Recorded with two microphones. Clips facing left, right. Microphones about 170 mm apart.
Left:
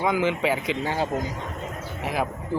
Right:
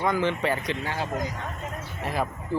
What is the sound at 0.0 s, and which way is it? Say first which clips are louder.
Speech: left 2 dB; 5° left (ahead or behind).